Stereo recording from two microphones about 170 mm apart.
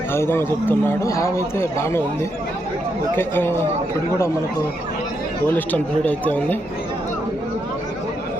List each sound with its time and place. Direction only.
0.1 s speech: 15° left (ahead or behind)
3.2 s speech: 15° left (ahead or behind)
5.5 s speech: 10° left (ahead or behind)